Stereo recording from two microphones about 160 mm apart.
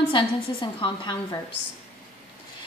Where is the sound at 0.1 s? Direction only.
30° left (ahead or behind).